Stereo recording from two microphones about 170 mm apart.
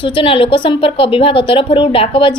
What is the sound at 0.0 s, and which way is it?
A woman's voice, 30° left (ahead or behind).